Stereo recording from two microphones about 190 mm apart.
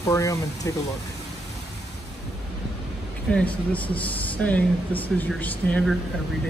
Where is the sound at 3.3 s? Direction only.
5° left (ahead or behind).